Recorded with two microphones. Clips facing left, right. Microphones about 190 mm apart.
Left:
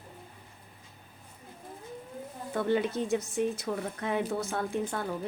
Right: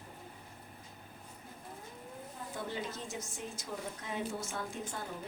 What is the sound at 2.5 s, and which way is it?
A woman's voice, 65° left (ahead or behind).